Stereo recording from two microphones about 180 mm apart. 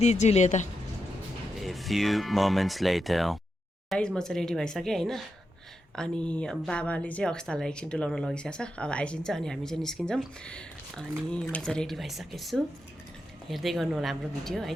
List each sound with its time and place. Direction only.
0.0 s speech: 40° left (ahead or behind)
1.6 s speech: centre (ahead or behind)